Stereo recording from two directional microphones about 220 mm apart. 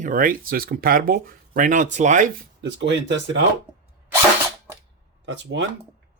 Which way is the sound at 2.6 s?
55° right (ahead or behind).